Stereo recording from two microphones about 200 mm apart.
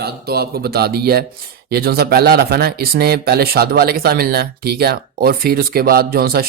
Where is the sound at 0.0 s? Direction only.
50° right (ahead or behind).